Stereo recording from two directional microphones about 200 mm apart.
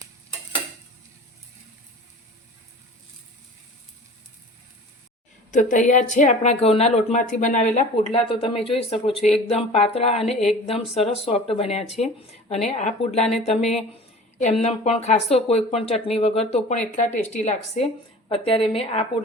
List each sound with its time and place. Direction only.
5.5 s speech: 40° left (ahead or behind)